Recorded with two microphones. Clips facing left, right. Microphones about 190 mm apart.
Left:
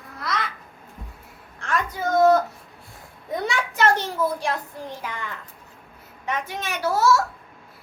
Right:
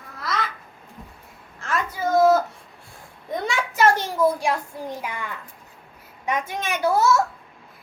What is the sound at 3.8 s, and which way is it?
Child singing, 10° right (ahead or behind).